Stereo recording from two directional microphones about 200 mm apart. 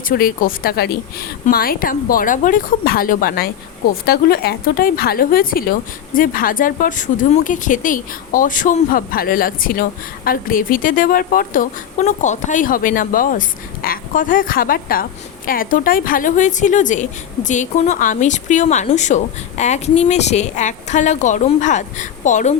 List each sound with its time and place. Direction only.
0.1 s a woman's voice: 45° left (ahead or behind)